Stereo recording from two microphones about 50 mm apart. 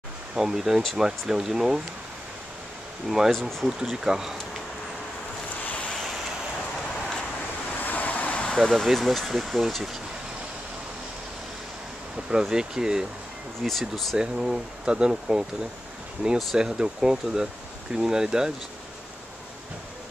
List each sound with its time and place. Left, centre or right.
0.3 s speech: centre
3.1 s speech: centre
3.3 s speech: centre
3.6 s speech: centre
7.8 s vehicle: left
8.8 s speech: centre
12.3 s speech: centre
13.6 s speech: centre
14.1 s speech: centre
16.5 s speech: centre